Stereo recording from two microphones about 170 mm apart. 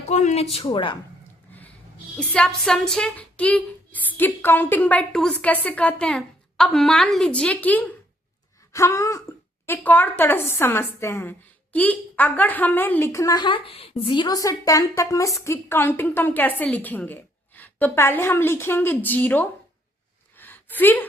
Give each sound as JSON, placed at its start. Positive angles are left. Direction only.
{"t": 0.1, "sound": "speech", "side_deg": 45}
{"t": 0.5, "sound": "a woman's voice", "side_deg": 30}
{"t": 2.1, "sound": "a woman's voice", "side_deg": 5}
{"t": 20.3, "sound": "a sound", "side_deg": 10}